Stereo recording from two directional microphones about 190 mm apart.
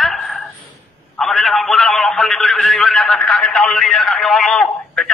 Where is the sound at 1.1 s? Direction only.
Centre (ahead or behind).